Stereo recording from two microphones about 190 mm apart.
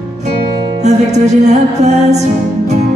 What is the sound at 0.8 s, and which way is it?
Music, 35° right (ahead or behind).